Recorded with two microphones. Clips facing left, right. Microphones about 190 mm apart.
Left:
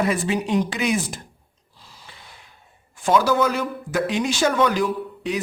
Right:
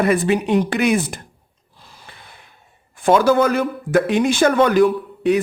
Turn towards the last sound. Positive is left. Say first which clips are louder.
# right 8 dB
turn(degrees=-55)  # may be behind; listen again after turning